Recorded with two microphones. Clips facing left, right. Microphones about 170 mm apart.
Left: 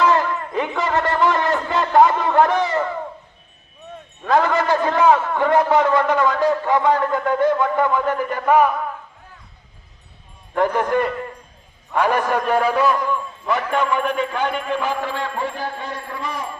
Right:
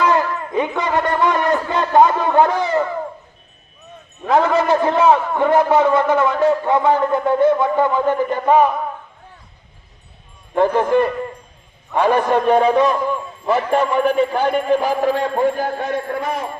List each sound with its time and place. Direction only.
0.0 s a sound: 20° right (ahead or behind)
2.6 s a man's voice: 20° right (ahead or behind)
4.3 s a man's voice: 20° right (ahead or behind)
10.5 s a man's voice: 20° right (ahead or behind)
12.3 s a man's voice: 25° right (ahead or behind); by 16.5 s 55° right (ahead or behind)